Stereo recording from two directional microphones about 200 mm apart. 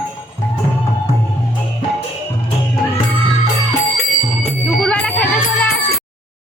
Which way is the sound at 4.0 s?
5° left (ahead or behind).